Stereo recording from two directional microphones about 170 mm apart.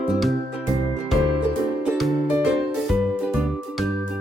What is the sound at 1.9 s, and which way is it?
Music, centre (ahead or behind).